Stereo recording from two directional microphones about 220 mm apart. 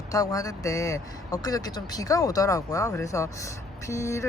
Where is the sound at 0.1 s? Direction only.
15° left (ahead or behind).